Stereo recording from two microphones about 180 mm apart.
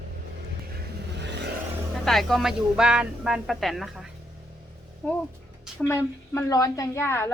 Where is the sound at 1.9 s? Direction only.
Centre (ahead or behind).